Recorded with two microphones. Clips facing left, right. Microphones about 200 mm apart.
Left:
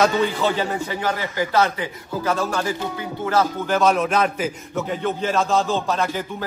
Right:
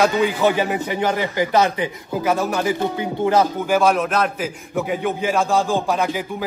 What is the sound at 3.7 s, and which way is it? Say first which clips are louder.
Speech: even; 10° right (ahead or behind).